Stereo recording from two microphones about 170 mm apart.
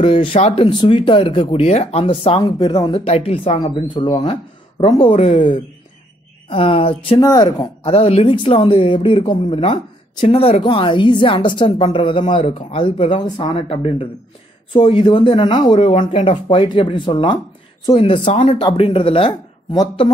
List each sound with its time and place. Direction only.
0.4 s speech: 35° left (ahead or behind)
3.0 s speech: 35° left (ahead or behind)
6.5 s a woman's voice: 30° left (ahead or behind)
15.7 s a woman's voice: 40° left (ahead or behind)